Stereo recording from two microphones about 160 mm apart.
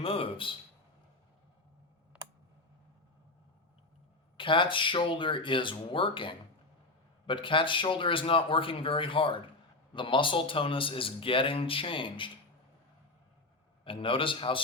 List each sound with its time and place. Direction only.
0.0 s a man's voice: 35° left (ahead or behind)
4.4 s speech: 30° left (ahead or behind)
13.8 s speech: 35° left (ahead or behind)